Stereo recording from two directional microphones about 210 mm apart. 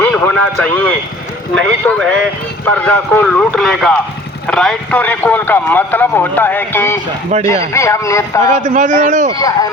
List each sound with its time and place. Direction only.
0.0 s speech: 5° left (ahead or behind)
8.4 s a man's voice: 35° right (ahead or behind)